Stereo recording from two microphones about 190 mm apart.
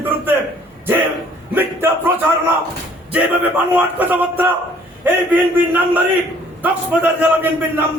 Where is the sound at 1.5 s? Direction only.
10° right (ahead or behind).